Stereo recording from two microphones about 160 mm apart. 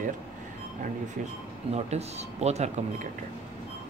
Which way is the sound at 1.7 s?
40° right (ahead or behind).